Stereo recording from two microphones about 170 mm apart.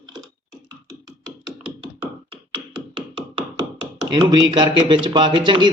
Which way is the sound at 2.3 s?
30° right (ahead or behind).